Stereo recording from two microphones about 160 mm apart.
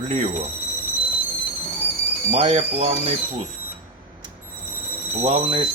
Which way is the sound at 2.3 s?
40° right (ahead or behind).